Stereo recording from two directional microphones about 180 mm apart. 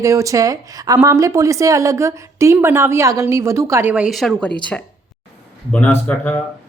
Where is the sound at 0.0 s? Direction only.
20° right (ahead or behind); by 4.5 s 5° left (ahead or behind).